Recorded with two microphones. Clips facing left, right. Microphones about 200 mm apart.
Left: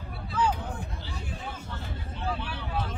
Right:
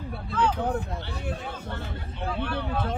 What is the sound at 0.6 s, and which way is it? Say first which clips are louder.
Speech: right 9 dB; 60° right (ahead or behind).